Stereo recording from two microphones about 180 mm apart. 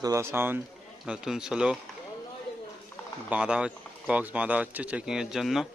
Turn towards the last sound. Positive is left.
turn(degrees=0)  # may be behind; listen again after turning